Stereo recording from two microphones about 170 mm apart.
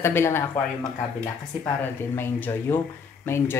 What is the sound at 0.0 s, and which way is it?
Speech, 15° left (ahead or behind).